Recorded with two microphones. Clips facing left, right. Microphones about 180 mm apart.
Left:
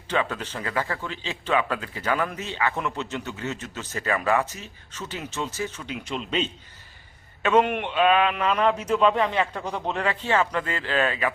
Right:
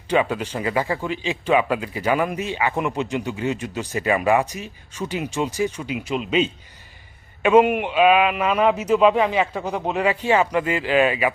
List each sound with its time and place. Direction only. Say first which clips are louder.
0.1 s a man's voice: right 6 dB; 15° right (ahead or behind)